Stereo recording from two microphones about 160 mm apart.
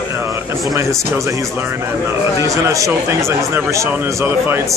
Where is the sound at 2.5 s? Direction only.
20° right (ahead or behind).